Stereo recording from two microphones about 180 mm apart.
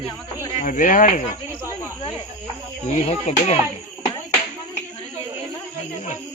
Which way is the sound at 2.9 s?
35° left (ahead or behind).